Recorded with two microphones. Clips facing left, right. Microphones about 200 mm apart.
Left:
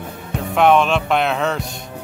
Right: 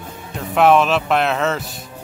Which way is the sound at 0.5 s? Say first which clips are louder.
Right 1 dB; centre (ahead or behind).